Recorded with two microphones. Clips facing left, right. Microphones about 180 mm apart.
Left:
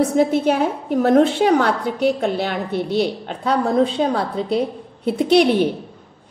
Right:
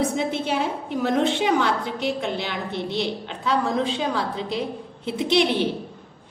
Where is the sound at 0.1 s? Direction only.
45° left (ahead or behind).